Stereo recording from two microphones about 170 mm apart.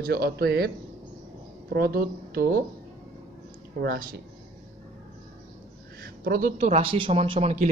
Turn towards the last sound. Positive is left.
turn(degrees=-40)  # may be behind; listen again after turning